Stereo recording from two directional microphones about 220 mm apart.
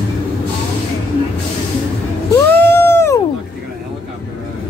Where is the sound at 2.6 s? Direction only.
10° left (ahead or behind).